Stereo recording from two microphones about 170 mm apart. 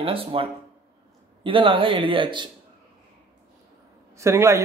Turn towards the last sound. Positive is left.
turn(degrees=-15)  # may be behind; listen again after turning